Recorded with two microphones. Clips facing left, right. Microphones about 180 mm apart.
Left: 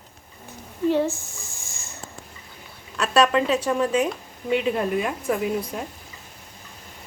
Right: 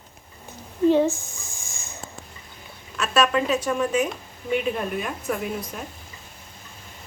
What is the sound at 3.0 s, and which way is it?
Speech, 35° left (ahead or behind).